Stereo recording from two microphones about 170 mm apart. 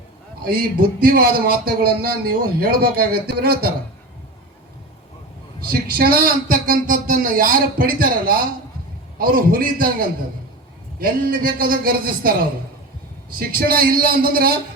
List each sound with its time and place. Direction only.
0.4 s a man's voice: 60° right (ahead or behind)
5.5 s a man's voice: 60° right (ahead or behind)